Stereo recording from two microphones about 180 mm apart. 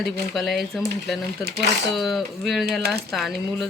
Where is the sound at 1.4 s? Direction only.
70° right (ahead or behind).